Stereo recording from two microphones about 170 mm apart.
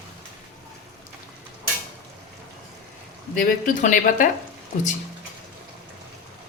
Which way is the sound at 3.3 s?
50° left (ahead or behind).